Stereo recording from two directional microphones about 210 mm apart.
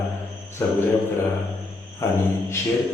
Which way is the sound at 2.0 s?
15° left (ahead or behind).